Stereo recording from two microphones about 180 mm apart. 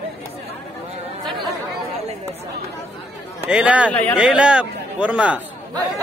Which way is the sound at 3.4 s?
5° right (ahead or behind).